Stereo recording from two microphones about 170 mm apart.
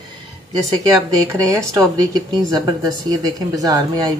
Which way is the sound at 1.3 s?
20° right (ahead or behind).